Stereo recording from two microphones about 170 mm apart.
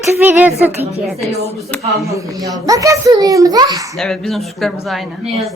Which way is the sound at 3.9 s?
Centre (ahead or behind).